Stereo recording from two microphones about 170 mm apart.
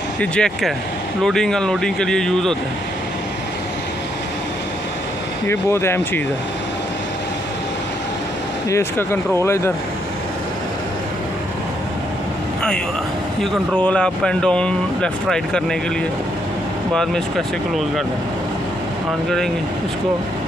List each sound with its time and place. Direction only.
0.2 s speech: 5° left (ahead or behind)
5.5 s speech: 15° left (ahead or behind)
8.6 s speech: 15° left (ahead or behind)
13.4 s speech: 5° left (ahead or behind)
16.9 s speech: 5° left (ahead or behind)